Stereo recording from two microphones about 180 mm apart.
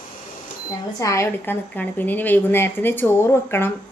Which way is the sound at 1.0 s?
15° left (ahead or behind).